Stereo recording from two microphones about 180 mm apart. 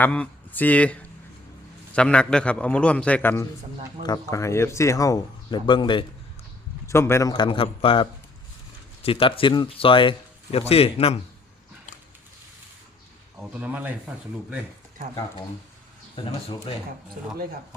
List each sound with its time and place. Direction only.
0.0 s a man's voice: 10° left (ahead or behind); by 6.1 s 25° left (ahead or behind)
6.8 s speech: 15° left (ahead or behind); by 8.0 s 30° left (ahead or behind)
9.0 s speech: 30° left (ahead or behind)
13.5 s speech: 10° right (ahead or behind)
16.1 s speech: 30° left (ahead or behind)